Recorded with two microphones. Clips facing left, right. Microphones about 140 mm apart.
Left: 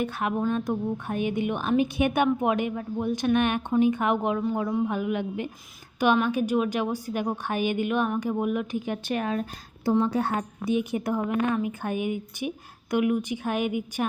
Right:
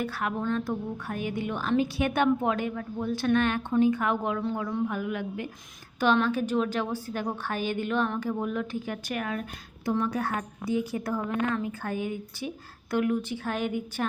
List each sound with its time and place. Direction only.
0.0 s a woman's voice: 20° left (ahead or behind)